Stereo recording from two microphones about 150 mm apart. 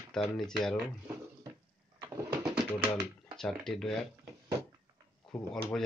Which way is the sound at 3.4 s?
Centre (ahead or behind).